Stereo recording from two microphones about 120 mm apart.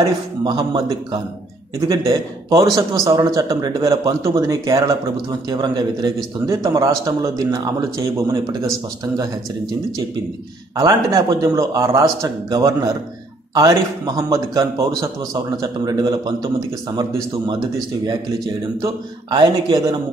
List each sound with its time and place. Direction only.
0.4 s a man's voice: 35° right (ahead or behind)
10.8 s a man's voice: 30° right (ahead or behind)
19.3 s a man's voice: 30° right (ahead or behind)